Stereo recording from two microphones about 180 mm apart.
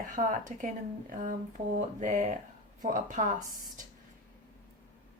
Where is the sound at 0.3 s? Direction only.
45° right (ahead or behind).